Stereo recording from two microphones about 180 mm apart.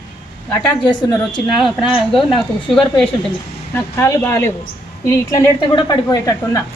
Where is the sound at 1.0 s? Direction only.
25° left (ahead or behind).